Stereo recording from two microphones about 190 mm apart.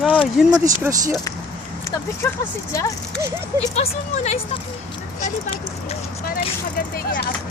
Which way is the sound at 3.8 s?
35° left (ahead or behind).